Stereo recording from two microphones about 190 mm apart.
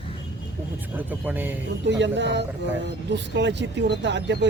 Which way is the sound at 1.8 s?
70° right (ahead or behind).